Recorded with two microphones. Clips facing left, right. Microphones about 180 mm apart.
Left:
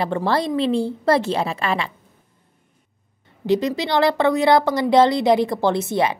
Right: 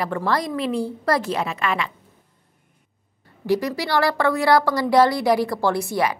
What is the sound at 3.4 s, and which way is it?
A woman's voice, 20° left (ahead or behind).